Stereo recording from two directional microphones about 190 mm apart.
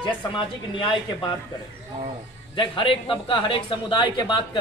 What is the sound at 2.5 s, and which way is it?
A man's voice, 25° left (ahead or behind).